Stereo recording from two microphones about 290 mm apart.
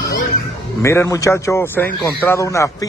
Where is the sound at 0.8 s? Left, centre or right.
Centre.